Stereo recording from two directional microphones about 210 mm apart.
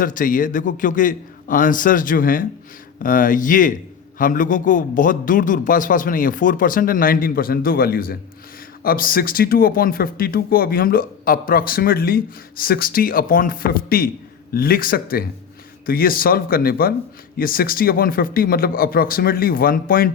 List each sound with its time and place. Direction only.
0.0 s a man's voice: 40° left (ahead or behind)